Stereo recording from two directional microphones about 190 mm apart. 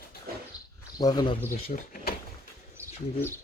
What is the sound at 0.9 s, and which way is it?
Speech, 20° left (ahead or behind).